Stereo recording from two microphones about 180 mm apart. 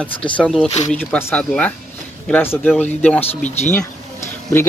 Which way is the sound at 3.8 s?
15° left (ahead or behind).